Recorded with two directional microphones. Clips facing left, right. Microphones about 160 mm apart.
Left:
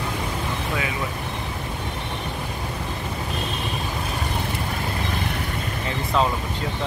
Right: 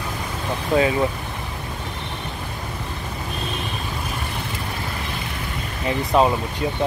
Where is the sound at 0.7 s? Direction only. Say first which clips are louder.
Right 12 dB; 35° right (ahead or behind).